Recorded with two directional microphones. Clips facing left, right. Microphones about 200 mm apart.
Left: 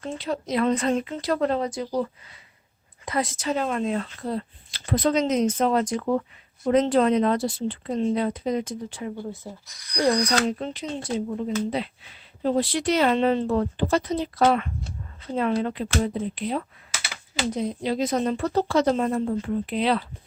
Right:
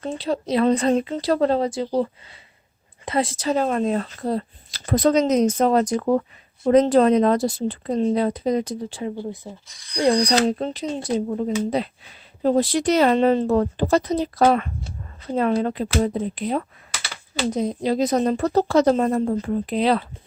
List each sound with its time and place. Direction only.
0.0 s speech: 30° right (ahead or behind)
3.1 s speech: 30° right (ahead or behind)